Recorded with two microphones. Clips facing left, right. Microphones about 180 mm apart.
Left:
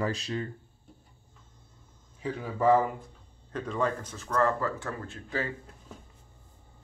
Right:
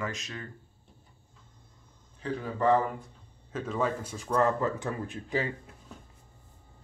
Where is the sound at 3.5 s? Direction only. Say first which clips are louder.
Even; 5° right (ahead or behind).